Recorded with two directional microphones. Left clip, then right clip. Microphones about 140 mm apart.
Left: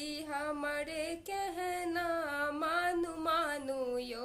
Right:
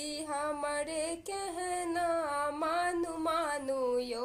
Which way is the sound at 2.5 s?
20° left (ahead or behind).